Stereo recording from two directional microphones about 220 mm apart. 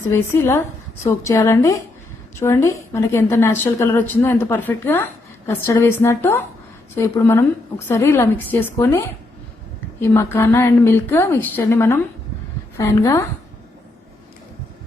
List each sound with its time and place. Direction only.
0.1 s a woman's voice: 10° left (ahead or behind)